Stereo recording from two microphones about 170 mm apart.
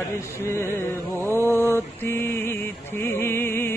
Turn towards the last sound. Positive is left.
turn(degrees=15)  # may be behind; listen again after turning